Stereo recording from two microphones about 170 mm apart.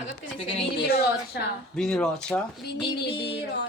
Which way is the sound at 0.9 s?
70° left (ahead or behind).